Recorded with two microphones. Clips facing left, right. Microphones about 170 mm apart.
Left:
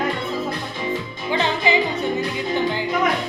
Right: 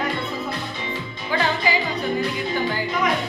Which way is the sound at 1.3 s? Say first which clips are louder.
Left 2 dB; 20° left (ahead or behind).